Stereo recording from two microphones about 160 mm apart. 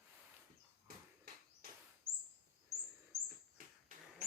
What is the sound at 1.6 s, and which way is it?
Bird vocalization, 65° right (ahead or behind).